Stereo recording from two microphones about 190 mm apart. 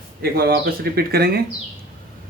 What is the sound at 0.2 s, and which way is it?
Speech, 55° right (ahead or behind).